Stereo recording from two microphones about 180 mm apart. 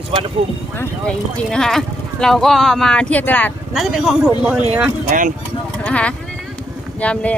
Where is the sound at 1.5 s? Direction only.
Centre (ahead or behind).